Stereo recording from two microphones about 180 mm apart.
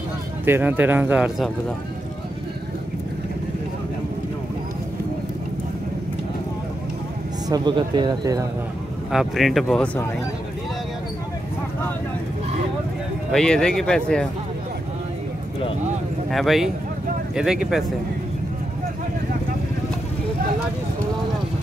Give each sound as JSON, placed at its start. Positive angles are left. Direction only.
{"t": 0.5, "sound": "speech", "side_deg": -10}
{"t": 7.4, "sound": "speech", "side_deg": -25}
{"t": 9.1, "sound": "speech", "side_deg": 0}
{"t": 13.3, "sound": "speech", "side_deg": 5}
{"t": 16.3, "sound": "speech", "side_deg": 0}